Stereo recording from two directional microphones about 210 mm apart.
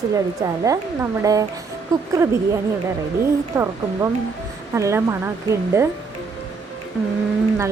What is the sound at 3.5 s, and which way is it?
Speech, 15° right (ahead or behind).